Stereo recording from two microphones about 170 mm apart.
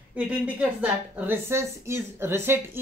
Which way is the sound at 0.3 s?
10° right (ahead or behind).